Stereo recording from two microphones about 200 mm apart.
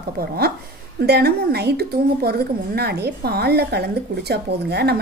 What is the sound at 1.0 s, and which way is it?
A woman's voice, 55° right (ahead or behind).